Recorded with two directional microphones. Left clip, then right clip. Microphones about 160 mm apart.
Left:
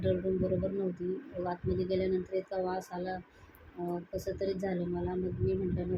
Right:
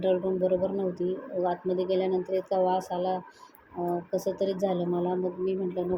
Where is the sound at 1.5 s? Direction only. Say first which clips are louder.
Right 5 dB; 30° right (ahead or behind).